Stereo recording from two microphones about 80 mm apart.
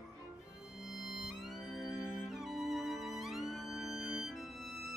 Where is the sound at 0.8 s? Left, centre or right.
Centre.